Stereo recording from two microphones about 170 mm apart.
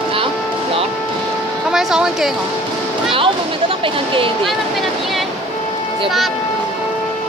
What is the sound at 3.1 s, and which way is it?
Speech, 30° right (ahead or behind).